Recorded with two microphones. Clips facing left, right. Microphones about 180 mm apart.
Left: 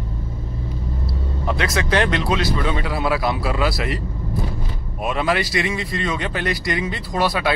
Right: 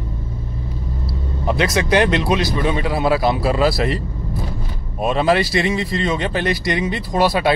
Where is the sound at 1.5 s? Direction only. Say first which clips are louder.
Right 4 dB; 20° right (ahead or behind).